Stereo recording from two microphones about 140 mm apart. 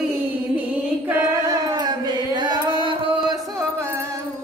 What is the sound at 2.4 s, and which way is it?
Carnatic music, 35° right (ahead or behind).